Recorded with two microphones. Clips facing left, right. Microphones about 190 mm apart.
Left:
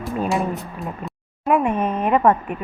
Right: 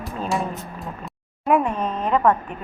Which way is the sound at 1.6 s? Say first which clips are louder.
Left 4 dB; 15° left (ahead or behind).